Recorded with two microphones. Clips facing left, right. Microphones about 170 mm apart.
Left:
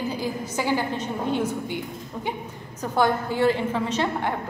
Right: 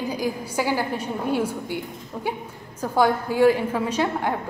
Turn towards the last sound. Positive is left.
turn(degrees=-10)  # may be behind; listen again after turning